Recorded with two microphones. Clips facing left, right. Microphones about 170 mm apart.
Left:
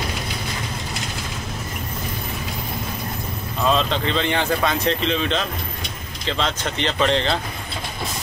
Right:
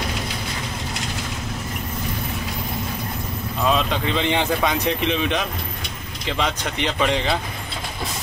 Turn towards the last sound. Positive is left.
turn(degrees=-10)  # may be behind; listen again after turning